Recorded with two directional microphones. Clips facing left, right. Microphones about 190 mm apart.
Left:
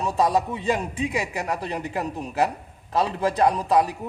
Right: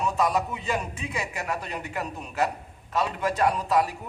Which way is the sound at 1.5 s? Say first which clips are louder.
Left 4 dB; 30° left (ahead or behind).